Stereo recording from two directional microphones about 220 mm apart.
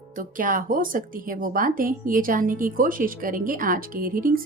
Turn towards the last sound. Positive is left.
turn(degrees=-40)  # may be behind; listen again after turning